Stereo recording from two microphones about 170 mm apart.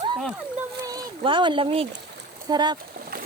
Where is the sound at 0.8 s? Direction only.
25° right (ahead or behind).